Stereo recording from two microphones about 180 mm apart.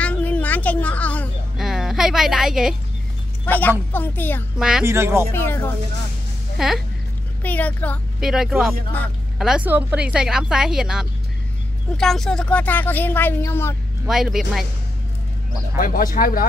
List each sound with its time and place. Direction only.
0.0 s a sound: 5° left (ahead or behind)
1.6 s a sound: 5° right (ahead or behind)
3.4 s speech: 10° left (ahead or behind)
4.6 s speech: 5° right (ahead or behind)
4.8 s speech: 15° right (ahead or behind)
5.3 s speech: 10° left (ahead or behind)
6.6 s speech: centre (ahead or behind)
7.4 s speech: 10° left (ahead or behind)
8.2 s speech: 5° right (ahead or behind); by 13.7 s 15° left (ahead or behind)
14.0 s speech: 5° right (ahead or behind)
15.8 s speech: 50° left (ahead or behind)